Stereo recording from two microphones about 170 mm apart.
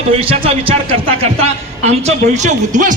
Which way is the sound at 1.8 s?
40° right (ahead or behind).